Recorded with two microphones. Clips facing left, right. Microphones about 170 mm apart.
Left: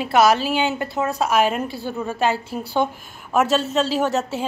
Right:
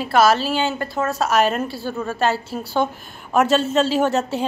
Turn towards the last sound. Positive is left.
turn(degrees=0)  # may be behind; listen again after turning